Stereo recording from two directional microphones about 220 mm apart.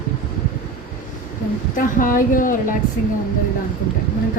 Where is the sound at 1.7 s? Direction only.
40° left (ahead or behind).